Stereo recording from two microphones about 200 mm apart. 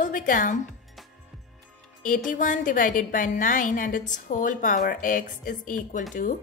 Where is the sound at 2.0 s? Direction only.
40° left (ahead or behind).